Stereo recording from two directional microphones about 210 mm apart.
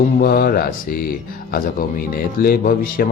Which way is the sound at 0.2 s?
45° left (ahead or behind).